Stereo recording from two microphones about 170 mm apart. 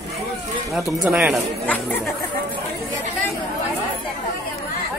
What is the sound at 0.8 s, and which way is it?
Speech, 5° right (ahead or behind).